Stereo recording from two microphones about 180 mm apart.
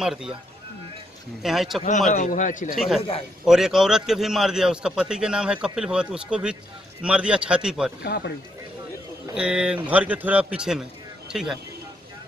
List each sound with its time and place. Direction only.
0.0 s a man's voice: 5° right (ahead or behind)
1.4 s a man's voice: centre (ahead or behind)
1.9 s a man's voice: 40° left (ahead or behind)
3.0 s a man's voice: 30° left (ahead or behind)
3.4 s a man's voice: centre (ahead or behind)
8.0 s speech: 65° left (ahead or behind)
9.3 s a man's voice: 5° right (ahead or behind)